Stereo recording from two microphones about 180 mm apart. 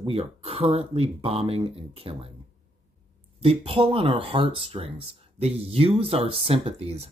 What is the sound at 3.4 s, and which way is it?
Speech, 30° right (ahead or behind).